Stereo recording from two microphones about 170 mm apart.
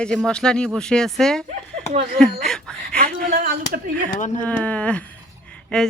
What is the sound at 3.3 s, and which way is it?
Speech, 60° right (ahead or behind).